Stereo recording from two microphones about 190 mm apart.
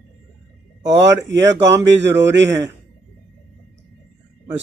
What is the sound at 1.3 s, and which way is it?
Speech, 70° right (ahead or behind).